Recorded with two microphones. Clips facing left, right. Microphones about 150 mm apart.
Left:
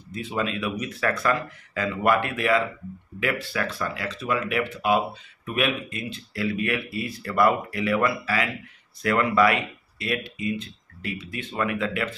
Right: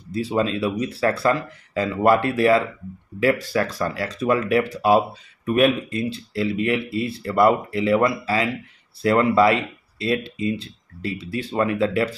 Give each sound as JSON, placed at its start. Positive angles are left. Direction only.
{"t": 0.1, "sound": "speech", "side_deg": -35}